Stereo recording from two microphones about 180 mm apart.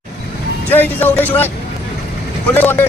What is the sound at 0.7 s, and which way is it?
Music, 10° left (ahead or behind).